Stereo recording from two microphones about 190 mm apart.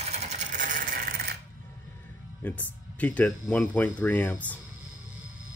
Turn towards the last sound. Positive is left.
turn(degrees=10)  # may be behind; listen again after turning